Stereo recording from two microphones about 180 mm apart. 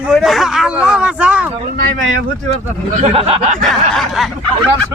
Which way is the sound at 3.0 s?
35° right (ahead or behind).